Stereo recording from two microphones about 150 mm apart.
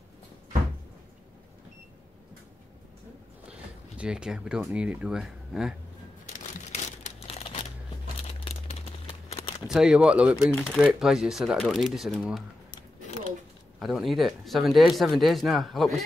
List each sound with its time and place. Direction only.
3.4 s speech: 5° right (ahead or behind)
6.7 s crumpling: 45° left (ahead or behind)
9.0 s a sound: 40° left (ahead or behind)
9.7 s speech: 5° right (ahead or behind)
10.5 s speech: 10° left (ahead or behind)
10.8 s speech: 5° right (ahead or behind)
13.0 s a sound: 45° left (ahead or behind)
13.7 s speech: centre (ahead or behind)